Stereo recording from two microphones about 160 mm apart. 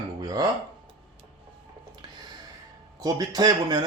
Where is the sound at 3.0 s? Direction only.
25° right (ahead or behind).